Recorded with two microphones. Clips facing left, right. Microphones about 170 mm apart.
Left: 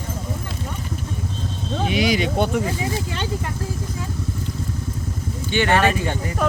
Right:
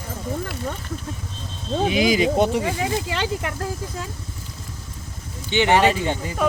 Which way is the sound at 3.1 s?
90° right.